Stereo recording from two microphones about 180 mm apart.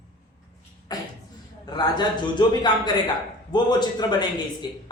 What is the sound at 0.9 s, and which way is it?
Cough, 20° left (ahead or behind).